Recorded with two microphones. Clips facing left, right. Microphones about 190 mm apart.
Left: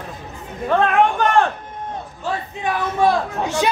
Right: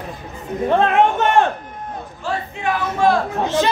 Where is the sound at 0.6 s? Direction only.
25° right (ahead or behind).